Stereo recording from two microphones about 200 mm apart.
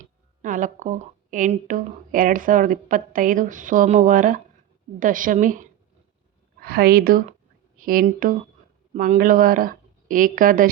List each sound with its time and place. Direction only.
0.0 s speech: 40° right (ahead or behind)
6.6 s a woman's voice: 50° right (ahead or behind)